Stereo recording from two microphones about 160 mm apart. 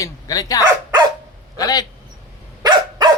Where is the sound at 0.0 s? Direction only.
25° left (ahead or behind).